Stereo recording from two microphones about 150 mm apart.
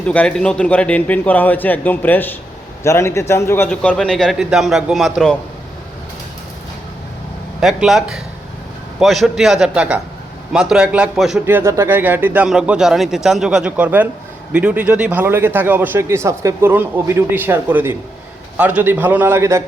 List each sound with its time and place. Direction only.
0.0 s a man's voice: 10° left (ahead or behind)
3.7 s a man's voice: 5° left (ahead or behind)
7.6 s a man's voice: centre (ahead or behind)
11.4 s a man's voice: 15° right (ahead or behind)